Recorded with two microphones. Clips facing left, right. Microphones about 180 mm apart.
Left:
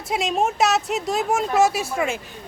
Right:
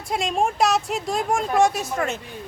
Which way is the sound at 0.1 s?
5° left (ahead or behind).